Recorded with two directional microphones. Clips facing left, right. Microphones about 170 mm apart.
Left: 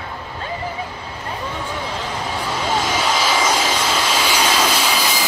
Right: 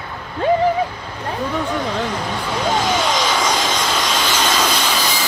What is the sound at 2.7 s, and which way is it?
Vehicle, 5° left (ahead or behind).